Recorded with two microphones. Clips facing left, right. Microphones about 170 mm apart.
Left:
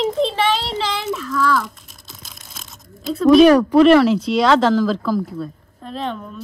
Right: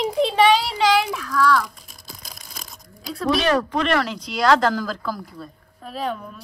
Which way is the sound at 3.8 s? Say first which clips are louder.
Left 11 dB; 5° left (ahead or behind).